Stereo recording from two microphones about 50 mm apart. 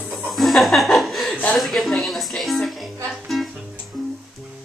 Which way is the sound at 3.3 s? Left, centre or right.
Centre.